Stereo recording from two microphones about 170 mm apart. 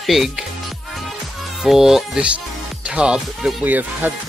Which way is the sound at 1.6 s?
5° right (ahead or behind).